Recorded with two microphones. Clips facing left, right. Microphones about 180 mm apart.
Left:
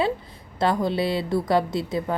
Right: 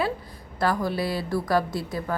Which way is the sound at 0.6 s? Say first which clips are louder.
Left 3 dB; 20° left (ahead or behind).